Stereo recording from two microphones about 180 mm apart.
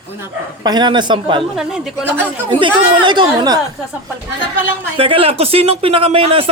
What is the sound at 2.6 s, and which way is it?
Speech, 25° right (ahead or behind).